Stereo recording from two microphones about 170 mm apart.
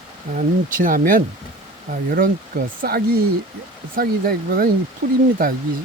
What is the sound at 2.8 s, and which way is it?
Speech, 60° right (ahead or behind).